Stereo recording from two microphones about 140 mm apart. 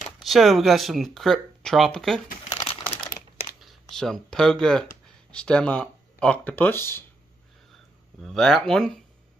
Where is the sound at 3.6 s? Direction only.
Centre (ahead or behind); by 7.0 s 15° left (ahead or behind).